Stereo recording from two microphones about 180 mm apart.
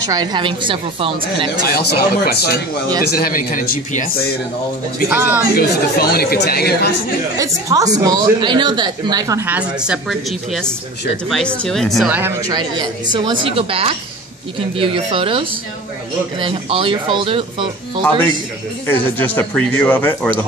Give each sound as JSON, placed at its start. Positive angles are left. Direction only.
{"t": 0.0, "sound": "speech", "side_deg": -20}
{"t": 1.7, "sound": "speech", "side_deg": 60}
{"t": 5.1, "sound": "speech", "side_deg": -10}
{"t": 5.6, "sound": "speech", "side_deg": 55}
{"t": 7.3, "sound": "speech", "side_deg": -20}
{"t": 12.1, "sound": "speech", "side_deg": -10}
{"t": 18.9, "sound": "speech", "side_deg": 10}